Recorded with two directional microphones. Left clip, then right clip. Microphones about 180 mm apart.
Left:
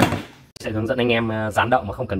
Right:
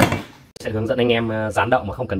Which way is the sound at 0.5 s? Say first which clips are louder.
Right 2 dB; centre (ahead or behind).